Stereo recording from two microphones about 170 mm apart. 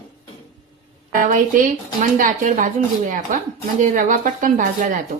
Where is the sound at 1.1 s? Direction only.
55° right (ahead or behind).